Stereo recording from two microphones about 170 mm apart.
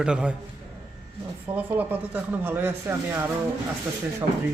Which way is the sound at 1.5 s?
10° right (ahead or behind).